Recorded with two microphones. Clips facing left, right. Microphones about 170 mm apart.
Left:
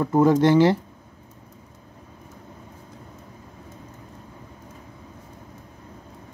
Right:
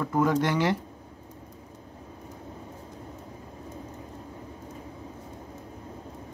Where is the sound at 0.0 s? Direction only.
30° left (ahead or behind).